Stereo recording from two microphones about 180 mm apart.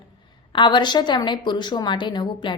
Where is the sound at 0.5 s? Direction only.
25° left (ahead or behind).